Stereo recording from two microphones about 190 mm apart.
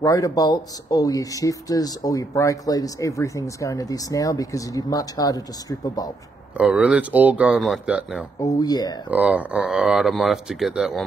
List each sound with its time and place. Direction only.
0.0 s speech: 20° left (ahead or behind)
6.5 s speech: 5° right (ahead or behind)
8.4 s speech: 20° left (ahead or behind)
9.1 s speech: 5° right (ahead or behind)